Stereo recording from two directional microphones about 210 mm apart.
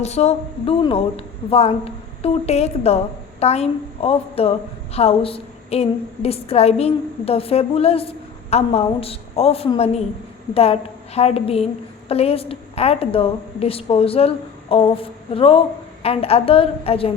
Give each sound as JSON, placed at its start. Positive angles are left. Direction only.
{"t": 0.0, "sound": "a woman's voice", "side_deg": 30}